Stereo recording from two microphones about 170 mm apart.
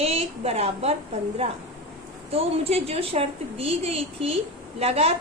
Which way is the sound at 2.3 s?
35° right (ahead or behind).